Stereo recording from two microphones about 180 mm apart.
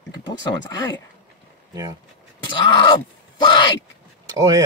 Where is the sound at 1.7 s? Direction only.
20° right (ahead or behind).